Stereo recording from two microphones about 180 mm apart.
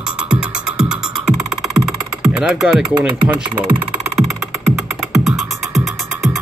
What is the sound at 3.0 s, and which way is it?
Speech, 5° right (ahead or behind).